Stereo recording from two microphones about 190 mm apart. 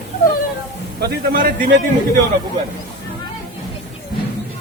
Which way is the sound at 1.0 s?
50° right (ahead or behind).